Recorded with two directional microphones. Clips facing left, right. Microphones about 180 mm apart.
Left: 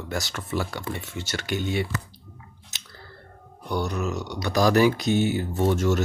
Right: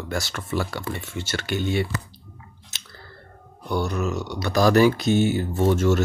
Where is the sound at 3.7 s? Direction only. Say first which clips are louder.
Right 2 dB; 15° left (ahead or behind).